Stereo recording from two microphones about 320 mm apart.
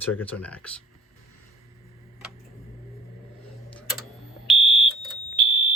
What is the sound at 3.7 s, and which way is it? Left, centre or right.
Tick-tock, centre.